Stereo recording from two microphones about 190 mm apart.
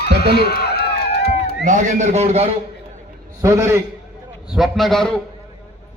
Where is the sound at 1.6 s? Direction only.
40° right (ahead or behind).